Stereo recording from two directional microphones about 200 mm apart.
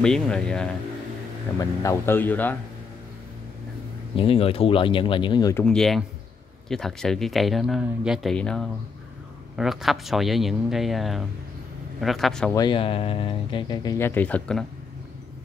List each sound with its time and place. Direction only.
0.0 s speech: 5° left (ahead or behind)
1.6 s speech: 15° left (ahead or behind)
4.2 s speech: 30° left (ahead or behind)
5.6 s speech: 5° left (ahead or behind)
12.5 s speech: 25° left (ahead or behind); by 14.7 s 5° left (ahead or behind)